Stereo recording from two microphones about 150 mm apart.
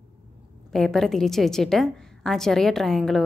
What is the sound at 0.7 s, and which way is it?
A woman's voice, 5° left (ahead or behind).